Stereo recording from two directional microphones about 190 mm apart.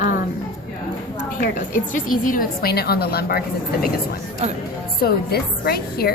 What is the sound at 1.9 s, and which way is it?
A woman's voice, 45° left (ahead or behind).